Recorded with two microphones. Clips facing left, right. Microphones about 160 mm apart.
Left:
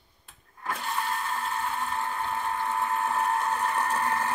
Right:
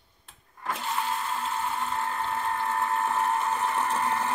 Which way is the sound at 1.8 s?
Centre (ahead or behind).